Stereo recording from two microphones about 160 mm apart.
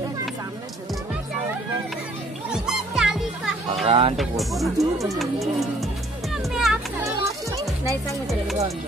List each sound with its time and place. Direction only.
2.5 s music: 5° right (ahead or behind)
3.8 s music: 35° right (ahead or behind)
4.2 s speech: centre (ahead or behind)
6.3 s music: 5° right (ahead or behind)
7.0 s children playing: 20° right (ahead or behind)